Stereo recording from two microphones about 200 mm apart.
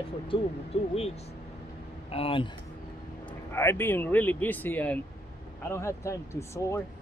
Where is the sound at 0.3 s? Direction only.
30° left (ahead or behind).